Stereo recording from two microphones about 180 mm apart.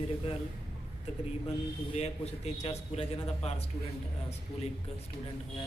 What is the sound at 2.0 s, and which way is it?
A man's voice, 35° left (ahead or behind).